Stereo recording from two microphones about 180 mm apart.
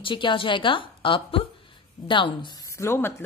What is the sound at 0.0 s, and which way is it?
A woman's voice, 25° left (ahead or behind).